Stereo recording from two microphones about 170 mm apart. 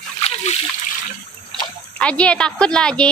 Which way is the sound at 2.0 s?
5° left (ahead or behind).